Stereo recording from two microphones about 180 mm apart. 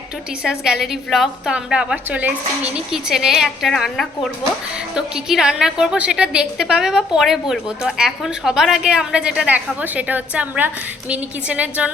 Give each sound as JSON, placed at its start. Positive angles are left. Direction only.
{"t": 0.4, "sound": "a woman's voice", "side_deg": -5}